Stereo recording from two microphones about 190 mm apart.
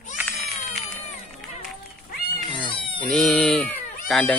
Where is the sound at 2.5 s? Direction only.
25° left (ahead or behind).